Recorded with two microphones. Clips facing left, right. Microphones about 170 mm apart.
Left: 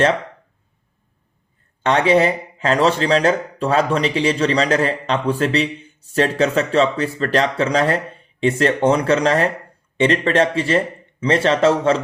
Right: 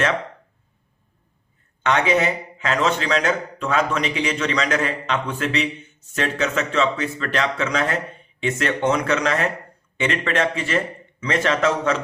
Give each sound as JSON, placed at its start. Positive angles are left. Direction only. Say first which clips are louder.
{"t": 1.8, "sound": "speech", "louder": "left 4 dB", "side_deg": 30}